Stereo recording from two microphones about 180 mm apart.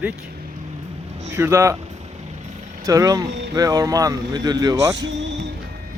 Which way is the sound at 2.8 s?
20° right (ahead or behind).